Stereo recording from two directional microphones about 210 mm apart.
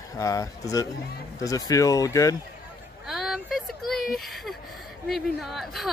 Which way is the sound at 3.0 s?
Centre (ahead or behind).